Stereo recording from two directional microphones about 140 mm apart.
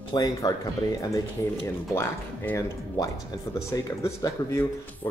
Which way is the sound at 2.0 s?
20° left (ahead or behind).